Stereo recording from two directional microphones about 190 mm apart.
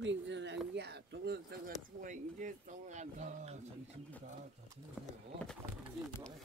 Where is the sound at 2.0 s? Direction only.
40° right (ahead or behind).